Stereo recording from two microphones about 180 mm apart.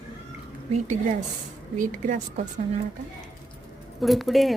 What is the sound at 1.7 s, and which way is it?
Speech, 50° right (ahead or behind).